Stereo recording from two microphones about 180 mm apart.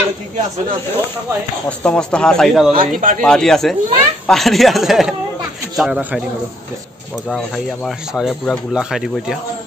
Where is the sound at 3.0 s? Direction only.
50° right (ahead or behind).